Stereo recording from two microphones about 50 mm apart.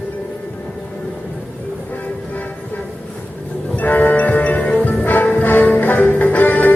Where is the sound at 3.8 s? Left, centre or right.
Left.